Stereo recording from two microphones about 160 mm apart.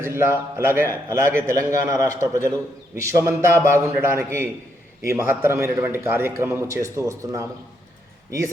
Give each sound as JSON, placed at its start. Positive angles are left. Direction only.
{"t": 0.0, "sound": "a man's voice", "side_deg": -15}